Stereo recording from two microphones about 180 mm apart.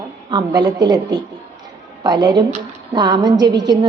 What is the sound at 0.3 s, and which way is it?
A woman's voice, 20° right (ahead or behind).